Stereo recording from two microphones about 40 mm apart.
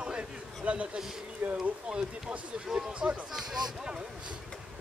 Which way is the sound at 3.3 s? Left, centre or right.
Centre.